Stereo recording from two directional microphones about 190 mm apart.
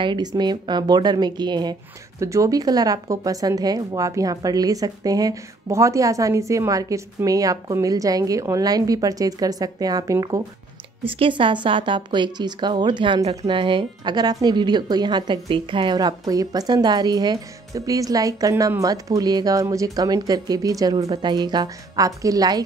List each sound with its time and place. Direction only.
0.0 s speech: 25° right (ahead or behind)
11.1 s speech: 30° right (ahead or behind)